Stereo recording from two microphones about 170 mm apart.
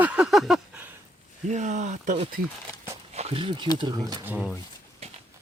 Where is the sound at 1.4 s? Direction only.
45° right (ahead or behind); by 4.3 s 25° right (ahead or behind).